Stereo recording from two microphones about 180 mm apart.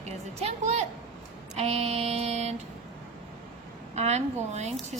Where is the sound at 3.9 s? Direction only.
40° right (ahead or behind).